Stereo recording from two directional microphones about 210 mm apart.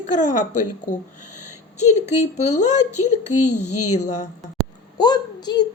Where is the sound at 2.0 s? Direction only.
35° left (ahead or behind).